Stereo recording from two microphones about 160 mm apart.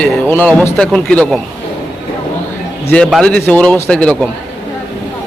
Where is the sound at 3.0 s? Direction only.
Centre (ahead or behind).